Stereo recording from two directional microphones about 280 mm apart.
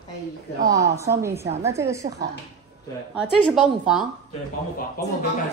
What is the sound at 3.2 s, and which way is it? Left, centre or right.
Speech, centre.